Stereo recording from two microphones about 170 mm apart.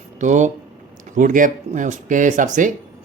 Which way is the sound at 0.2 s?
45° right (ahead or behind).